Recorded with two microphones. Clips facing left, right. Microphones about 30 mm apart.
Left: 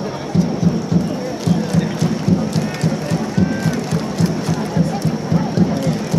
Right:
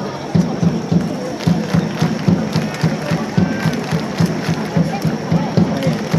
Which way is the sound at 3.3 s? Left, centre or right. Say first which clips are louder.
Even; right.